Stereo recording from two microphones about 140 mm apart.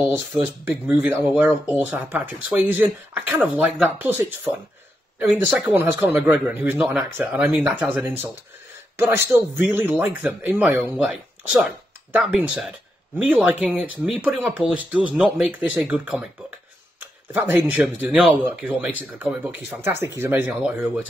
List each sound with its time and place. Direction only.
0.7 s speech: 15° right (ahead or behind)
5.7 s speech: 15° right (ahead or behind)
11.0 s speech: 5° right (ahead or behind)